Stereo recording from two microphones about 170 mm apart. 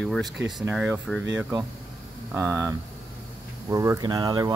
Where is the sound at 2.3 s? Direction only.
15° right (ahead or behind).